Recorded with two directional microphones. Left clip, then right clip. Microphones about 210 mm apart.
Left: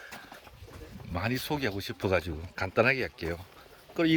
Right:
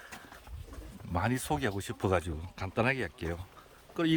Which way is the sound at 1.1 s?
15° right (ahead or behind).